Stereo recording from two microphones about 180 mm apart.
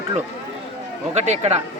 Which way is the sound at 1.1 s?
35° right (ahead or behind).